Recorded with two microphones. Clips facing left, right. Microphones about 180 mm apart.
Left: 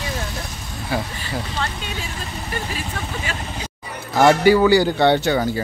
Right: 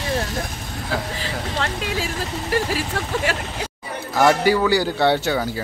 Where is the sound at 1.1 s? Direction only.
90° right.